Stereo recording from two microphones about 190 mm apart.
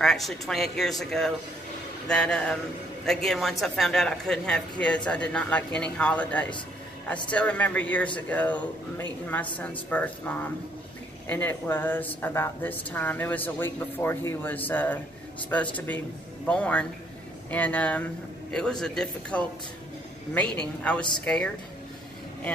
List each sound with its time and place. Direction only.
0.0 s speech: centre (ahead or behind)
20.5 s speech: 5° left (ahead or behind)